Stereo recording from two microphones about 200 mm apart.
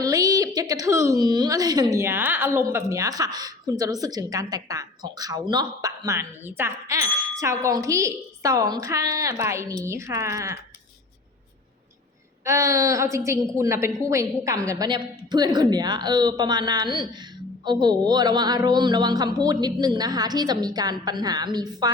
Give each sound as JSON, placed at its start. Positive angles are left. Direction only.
{"t": 0.0, "sound": "a woman's voice", "side_deg": -15}
{"t": 12.5, "sound": "a woman's voice", "side_deg": -15}